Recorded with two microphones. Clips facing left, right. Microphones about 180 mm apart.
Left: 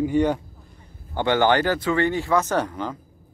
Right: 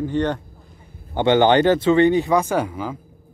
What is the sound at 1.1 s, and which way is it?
Speech, 20° right (ahead or behind).